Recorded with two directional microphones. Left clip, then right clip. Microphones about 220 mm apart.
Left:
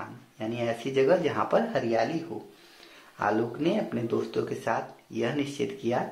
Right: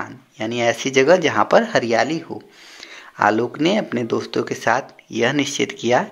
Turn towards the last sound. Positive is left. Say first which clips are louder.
# right 11 dB
turn(degrees=-40)  # may be behind; listen again after turning